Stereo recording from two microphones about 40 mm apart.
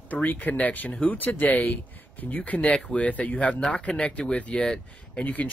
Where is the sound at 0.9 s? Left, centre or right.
Left.